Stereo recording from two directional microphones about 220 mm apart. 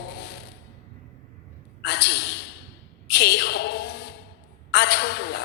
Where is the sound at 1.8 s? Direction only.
50° left (ahead or behind).